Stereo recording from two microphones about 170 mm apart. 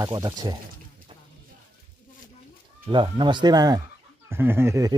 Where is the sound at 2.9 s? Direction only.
25° right (ahead or behind).